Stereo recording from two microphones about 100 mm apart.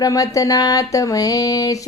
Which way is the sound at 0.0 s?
35° left (ahead or behind).